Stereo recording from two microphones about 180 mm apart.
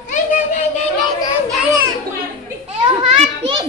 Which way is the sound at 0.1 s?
45° left (ahead or behind).